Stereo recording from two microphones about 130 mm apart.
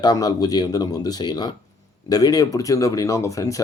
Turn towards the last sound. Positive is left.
turn(degrees=25)  # may be behind; listen again after turning